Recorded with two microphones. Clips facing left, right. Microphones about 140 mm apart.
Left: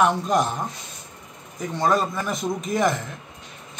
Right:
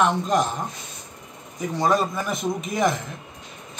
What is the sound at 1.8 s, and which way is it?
A man's voice, centre (ahead or behind).